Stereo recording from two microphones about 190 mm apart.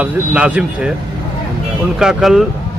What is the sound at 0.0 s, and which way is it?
Speech, 5° right (ahead or behind).